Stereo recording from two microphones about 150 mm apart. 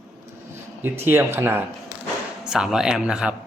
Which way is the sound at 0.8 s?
15° right (ahead or behind).